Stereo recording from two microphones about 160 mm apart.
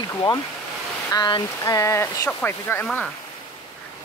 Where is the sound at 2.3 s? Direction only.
10° left (ahead or behind).